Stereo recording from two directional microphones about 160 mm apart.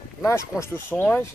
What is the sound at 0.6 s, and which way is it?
Speech, 15° left (ahead or behind).